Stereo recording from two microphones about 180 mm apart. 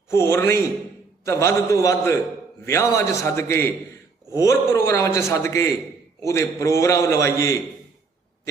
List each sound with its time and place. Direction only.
0.1 s a man's voice: 15° left (ahead or behind)